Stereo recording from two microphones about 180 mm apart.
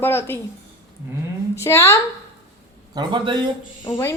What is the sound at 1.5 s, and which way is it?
Speech, 15° left (ahead or behind).